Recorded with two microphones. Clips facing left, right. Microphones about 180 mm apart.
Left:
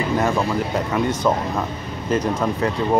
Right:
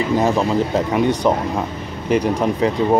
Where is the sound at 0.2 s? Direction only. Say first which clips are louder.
Right 3 dB; 20° right (ahead or behind).